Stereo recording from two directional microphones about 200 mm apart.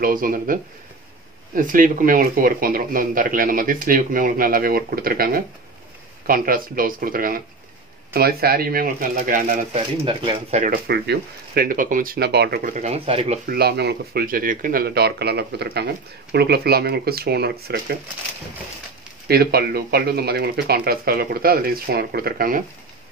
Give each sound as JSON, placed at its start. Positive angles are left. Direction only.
{"t": 0.0, "sound": "speech", "side_deg": -45}
{"t": 10.6, "sound": "speech", "side_deg": -50}
{"t": 12.7, "sound": "speech", "side_deg": -30}
{"t": 13.5, "sound": "speech", "side_deg": -50}
{"t": 19.2, "sound": "speech", "side_deg": -50}